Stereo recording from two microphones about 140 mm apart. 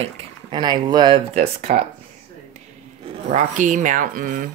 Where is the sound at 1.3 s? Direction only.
45° right (ahead or behind).